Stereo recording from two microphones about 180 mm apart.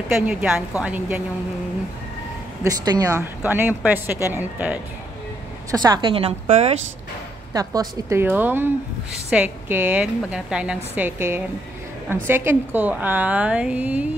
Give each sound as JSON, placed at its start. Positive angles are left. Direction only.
{"t": 0.1, "sound": "a woman's voice", "side_deg": -5}
{"t": 2.6, "sound": "a woman's voice", "side_deg": -20}
{"t": 5.7, "sound": "a woman's voice", "side_deg": -20}
{"t": 7.5, "sound": "a woman's voice", "side_deg": -20}